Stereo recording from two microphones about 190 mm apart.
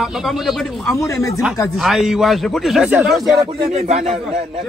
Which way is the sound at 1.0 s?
15° left (ahead or behind).